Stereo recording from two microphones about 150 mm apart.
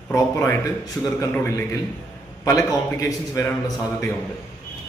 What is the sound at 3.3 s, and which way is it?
Speech, 20° left (ahead or behind).